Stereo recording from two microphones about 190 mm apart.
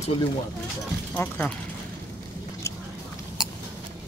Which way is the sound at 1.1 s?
10° left (ahead or behind).